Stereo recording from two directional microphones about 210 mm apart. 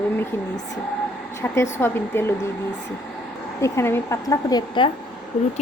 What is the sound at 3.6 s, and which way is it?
Speech, 15° left (ahead or behind).